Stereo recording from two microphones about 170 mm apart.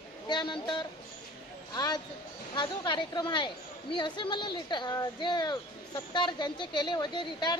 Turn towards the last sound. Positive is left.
turn(degrees=25)  # may be behind; listen again after turning